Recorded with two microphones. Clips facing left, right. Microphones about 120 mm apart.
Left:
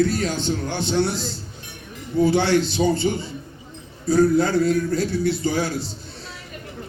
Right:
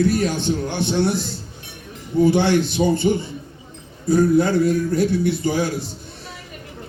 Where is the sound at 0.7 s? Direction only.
55° right (ahead or behind).